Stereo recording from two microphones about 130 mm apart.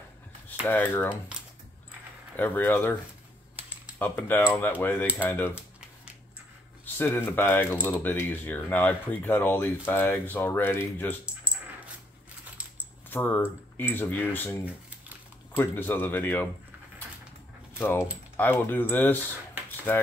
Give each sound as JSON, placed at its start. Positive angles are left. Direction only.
{"t": 0.7, "sound": "speech", "side_deg": 15}
{"t": 2.3, "sound": "speech", "side_deg": 15}
{"t": 4.0, "sound": "speech", "side_deg": 15}
{"t": 6.8, "sound": "speech", "side_deg": 15}
{"t": 11.2, "sound": "coin", "side_deg": -10}
{"t": 13.1, "sound": "speech", "side_deg": 15}
{"t": 17.7, "sound": "speech", "side_deg": 15}